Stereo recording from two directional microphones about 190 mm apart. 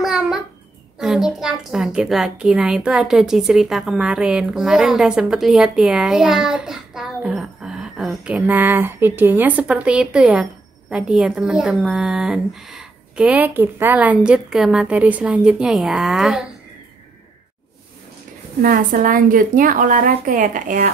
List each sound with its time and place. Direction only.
0.0 s a sound: centre (ahead or behind)
0.9 s a woman's voice: centre (ahead or behind)
18.6 s a woman's voice: 50° right (ahead or behind)